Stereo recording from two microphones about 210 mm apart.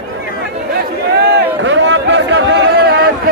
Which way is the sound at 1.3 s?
60° right (ahead or behind).